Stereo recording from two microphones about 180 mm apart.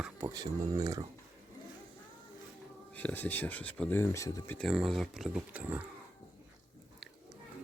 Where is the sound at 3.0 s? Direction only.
10° left (ahead or behind).